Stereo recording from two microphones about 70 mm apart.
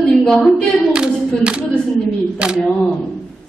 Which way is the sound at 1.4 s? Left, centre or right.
Centre.